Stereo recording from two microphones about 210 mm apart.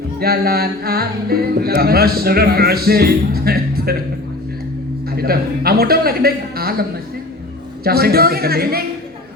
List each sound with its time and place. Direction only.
0.2 s music: 45° right (ahead or behind)
5.1 s music: 45° right (ahead or behind)
7.9 s music: 45° right (ahead or behind)